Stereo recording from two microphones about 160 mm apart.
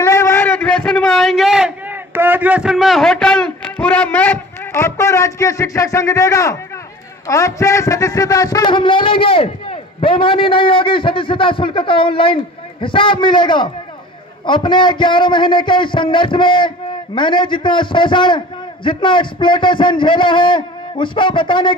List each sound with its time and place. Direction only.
0.0 s a man's voice: 20° left (ahead or behind)